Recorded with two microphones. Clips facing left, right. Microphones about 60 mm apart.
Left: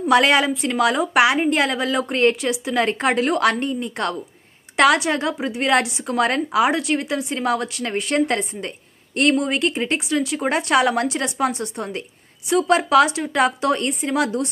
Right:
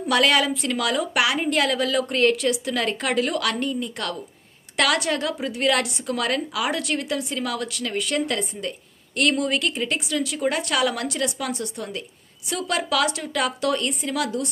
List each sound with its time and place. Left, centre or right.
0.1 s a woman's voice: left